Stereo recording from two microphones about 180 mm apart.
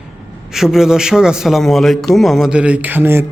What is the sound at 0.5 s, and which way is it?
A man's voice, centre (ahead or behind).